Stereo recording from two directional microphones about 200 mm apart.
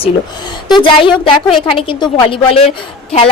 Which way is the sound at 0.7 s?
25° left (ahead or behind).